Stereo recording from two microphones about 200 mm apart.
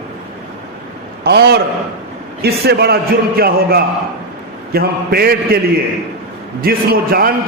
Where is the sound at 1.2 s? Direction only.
55° right (ahead or behind).